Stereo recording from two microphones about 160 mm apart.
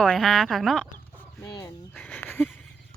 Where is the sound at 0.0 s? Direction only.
Centre (ahead or behind).